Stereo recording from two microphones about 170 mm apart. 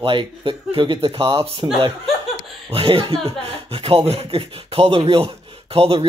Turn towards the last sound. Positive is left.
turn(degrees=-35)  # may be behind; listen again after turning